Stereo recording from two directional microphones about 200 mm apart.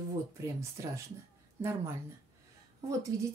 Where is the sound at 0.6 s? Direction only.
15° right (ahead or behind).